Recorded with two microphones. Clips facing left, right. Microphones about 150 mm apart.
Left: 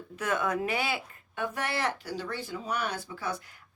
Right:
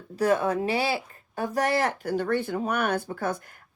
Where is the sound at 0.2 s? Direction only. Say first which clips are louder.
Right 6 dB; 35° right (ahead or behind).